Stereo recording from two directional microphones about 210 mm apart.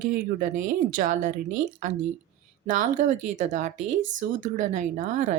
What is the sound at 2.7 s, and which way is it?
A woman's voice, 35° right (ahead or behind).